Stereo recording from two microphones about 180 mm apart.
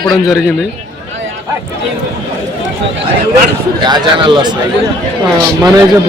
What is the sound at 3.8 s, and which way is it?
Speech, 25° right (ahead or behind).